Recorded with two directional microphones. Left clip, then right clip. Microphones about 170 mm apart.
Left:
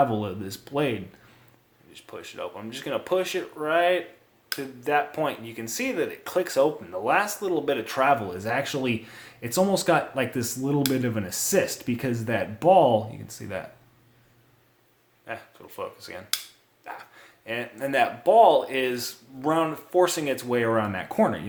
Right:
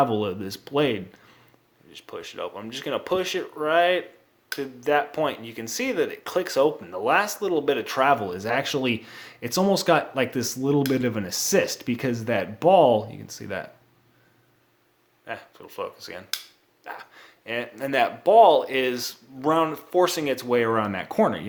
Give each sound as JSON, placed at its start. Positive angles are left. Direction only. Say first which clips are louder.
{"t": 0.0, "sound": "speech", "louder": "right 1 dB", "side_deg": -30}
{"t": 15.2, "sound": "speech", "louder": "right 1 dB", "side_deg": -25}